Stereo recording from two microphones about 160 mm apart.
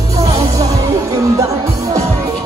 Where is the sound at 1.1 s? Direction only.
20° right (ahead or behind).